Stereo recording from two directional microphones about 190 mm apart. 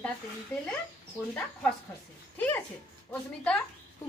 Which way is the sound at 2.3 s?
10° left (ahead or behind).